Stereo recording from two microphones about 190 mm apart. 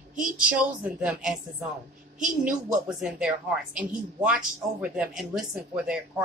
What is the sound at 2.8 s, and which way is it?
Speech, 5° right (ahead or behind).